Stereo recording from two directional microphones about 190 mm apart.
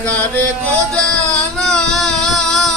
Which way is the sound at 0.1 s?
10° left (ahead or behind).